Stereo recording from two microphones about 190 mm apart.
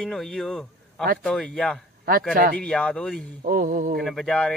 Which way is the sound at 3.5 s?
45° right (ahead or behind).